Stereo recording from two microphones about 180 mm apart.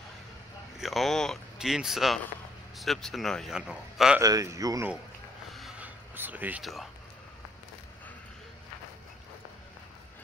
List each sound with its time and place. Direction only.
0.7 s speech: centre (ahead or behind)
4.2 s speech: 20° right (ahead or behind)
5.5 s a sound: centre (ahead or behind)
6.1 s speech: 10° right (ahead or behind)